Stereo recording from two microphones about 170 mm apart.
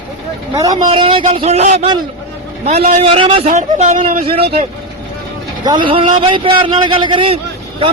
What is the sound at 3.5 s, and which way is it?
Speech, 45° right (ahead or behind).